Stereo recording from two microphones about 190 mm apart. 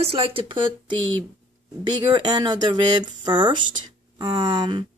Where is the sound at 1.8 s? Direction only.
25° right (ahead or behind).